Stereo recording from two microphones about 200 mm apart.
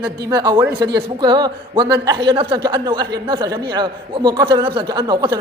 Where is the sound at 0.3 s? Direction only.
20° right (ahead or behind).